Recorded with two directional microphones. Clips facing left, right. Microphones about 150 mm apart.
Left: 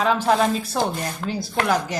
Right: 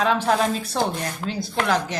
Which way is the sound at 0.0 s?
Centre (ahead or behind).